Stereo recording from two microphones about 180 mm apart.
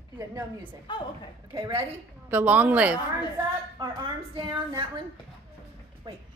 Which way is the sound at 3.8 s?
25° right (ahead or behind).